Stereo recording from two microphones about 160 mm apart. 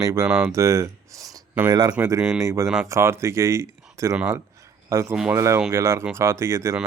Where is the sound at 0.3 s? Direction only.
5° right (ahead or behind).